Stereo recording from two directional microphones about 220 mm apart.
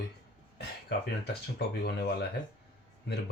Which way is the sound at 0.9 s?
50° left (ahead or behind).